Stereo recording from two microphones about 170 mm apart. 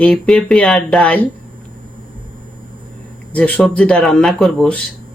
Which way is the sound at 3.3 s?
10° left (ahead or behind).